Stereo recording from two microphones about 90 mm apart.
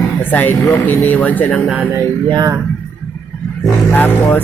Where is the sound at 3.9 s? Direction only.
20° left (ahead or behind).